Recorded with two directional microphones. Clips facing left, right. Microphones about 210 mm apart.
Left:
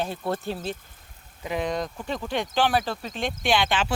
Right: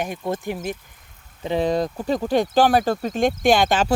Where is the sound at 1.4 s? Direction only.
30° right (ahead or behind).